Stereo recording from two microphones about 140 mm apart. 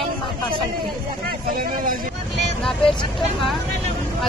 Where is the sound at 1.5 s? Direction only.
80° right.